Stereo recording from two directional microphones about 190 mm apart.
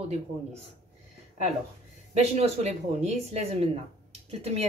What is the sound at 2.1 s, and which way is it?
A woman's voice, 35° right (ahead or behind).